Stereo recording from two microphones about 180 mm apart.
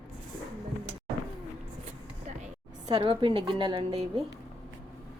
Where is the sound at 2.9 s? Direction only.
30° right (ahead or behind).